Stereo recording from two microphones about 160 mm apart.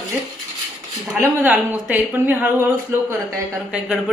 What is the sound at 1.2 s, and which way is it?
Speech, 10° right (ahead or behind).